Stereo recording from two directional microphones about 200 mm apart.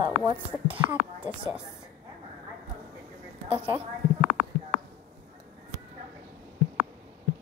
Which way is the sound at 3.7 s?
20° right (ahead or behind).